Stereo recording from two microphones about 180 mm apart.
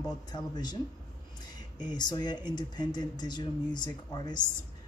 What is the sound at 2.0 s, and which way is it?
Speech, 25° left (ahead or behind).